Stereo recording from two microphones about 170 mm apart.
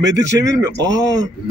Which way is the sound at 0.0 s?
20° right (ahead or behind).